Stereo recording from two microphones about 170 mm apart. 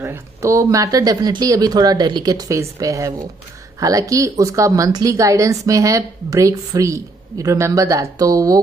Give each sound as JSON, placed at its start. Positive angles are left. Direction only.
{"t": 0.0, "sound": "a woman's voice", "side_deg": -15}